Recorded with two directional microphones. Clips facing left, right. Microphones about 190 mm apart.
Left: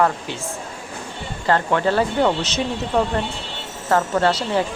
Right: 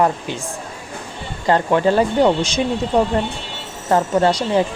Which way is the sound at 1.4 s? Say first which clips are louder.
Right 3 dB; 15° right (ahead or behind).